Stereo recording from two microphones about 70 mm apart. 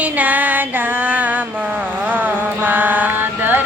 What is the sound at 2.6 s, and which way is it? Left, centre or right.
Mantra, right.